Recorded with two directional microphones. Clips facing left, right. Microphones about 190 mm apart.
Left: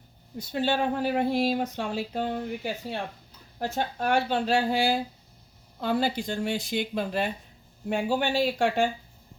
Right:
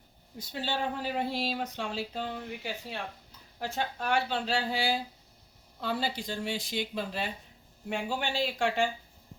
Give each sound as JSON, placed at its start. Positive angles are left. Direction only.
{"t": 0.3, "sound": "speech", "side_deg": 50}
{"t": 3.6, "sound": "speech", "side_deg": 45}